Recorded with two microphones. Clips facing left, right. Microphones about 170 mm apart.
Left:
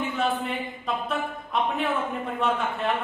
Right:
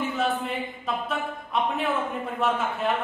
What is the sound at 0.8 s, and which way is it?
A man's voice, centre (ahead or behind).